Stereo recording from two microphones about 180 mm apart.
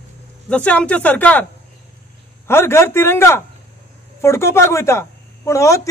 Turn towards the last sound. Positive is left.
turn(degrees=15)  # may be behind; listen again after turning